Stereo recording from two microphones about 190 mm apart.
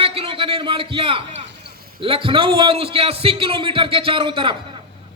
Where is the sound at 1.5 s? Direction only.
60° right (ahead or behind).